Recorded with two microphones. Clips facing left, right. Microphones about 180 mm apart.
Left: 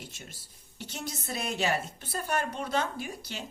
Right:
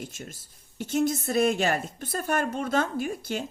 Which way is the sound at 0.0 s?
50° right (ahead or behind).